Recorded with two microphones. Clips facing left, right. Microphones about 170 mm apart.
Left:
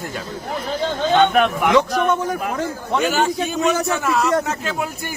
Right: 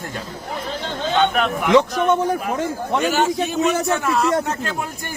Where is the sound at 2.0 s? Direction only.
30° right (ahead or behind).